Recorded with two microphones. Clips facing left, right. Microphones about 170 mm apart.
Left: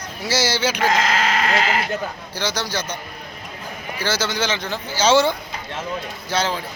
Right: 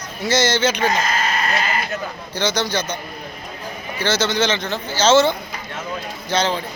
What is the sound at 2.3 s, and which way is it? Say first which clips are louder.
Speech: right 5 dB; 5° left (ahead or behind).